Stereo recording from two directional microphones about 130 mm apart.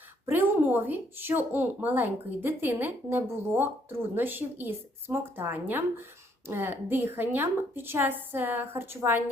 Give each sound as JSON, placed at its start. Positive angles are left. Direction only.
{"t": 0.3, "sound": "speech", "side_deg": -15}